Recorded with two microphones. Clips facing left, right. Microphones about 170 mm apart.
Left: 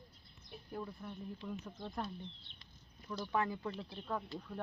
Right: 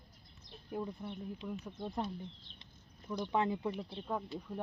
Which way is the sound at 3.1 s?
20° right (ahead or behind).